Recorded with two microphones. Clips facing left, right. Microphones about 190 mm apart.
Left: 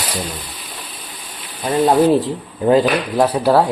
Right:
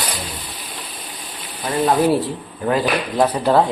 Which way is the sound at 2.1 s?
20° left (ahead or behind).